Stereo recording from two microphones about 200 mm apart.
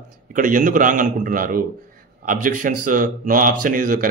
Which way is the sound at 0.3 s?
40° right (ahead or behind).